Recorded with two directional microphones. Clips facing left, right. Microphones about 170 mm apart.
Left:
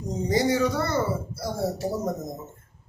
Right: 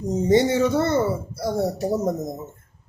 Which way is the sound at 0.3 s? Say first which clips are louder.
Right 4 dB; 25° right (ahead or behind).